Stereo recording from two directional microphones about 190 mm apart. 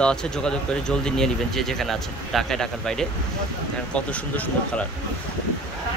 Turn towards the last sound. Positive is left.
turn(degrees=5)  # may be behind; listen again after turning